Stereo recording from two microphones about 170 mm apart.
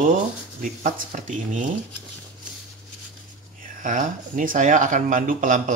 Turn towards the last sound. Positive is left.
turn(degrees=-50)  # may be behind; listen again after turning